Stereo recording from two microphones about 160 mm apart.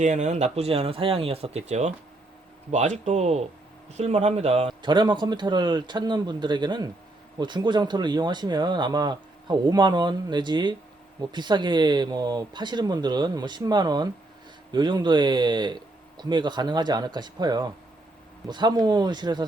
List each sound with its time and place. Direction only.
0.0 s speech: 50° right (ahead or behind)
4.9 s speech: 30° right (ahead or behind)